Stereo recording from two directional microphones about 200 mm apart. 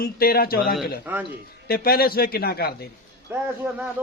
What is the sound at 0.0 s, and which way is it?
Speech, 50° left (ahead or behind).